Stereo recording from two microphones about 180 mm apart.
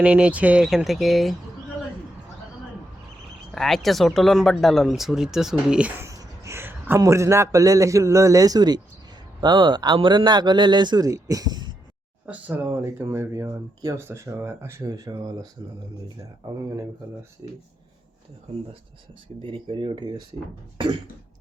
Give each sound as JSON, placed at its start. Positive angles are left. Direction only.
{"t": 0.0, "sound": "speech", "side_deg": -5}
{"t": 3.5, "sound": "speech", "side_deg": 0}
{"t": 6.1, "sound": "a man's voice", "side_deg": -15}
{"t": 12.2, "sound": "speech", "side_deg": -10}
{"t": 17.4, "sound": "a man's voice", "side_deg": -20}
{"t": 19.4, "sound": "a man's voice", "side_deg": -30}